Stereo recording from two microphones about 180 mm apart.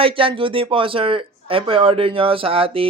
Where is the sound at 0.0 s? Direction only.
30° right (ahead or behind).